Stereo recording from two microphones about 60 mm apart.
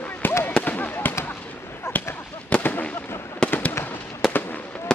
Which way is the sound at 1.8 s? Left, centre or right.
Left.